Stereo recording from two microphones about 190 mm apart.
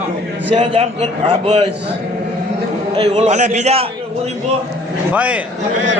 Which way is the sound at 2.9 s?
35° right (ahead or behind).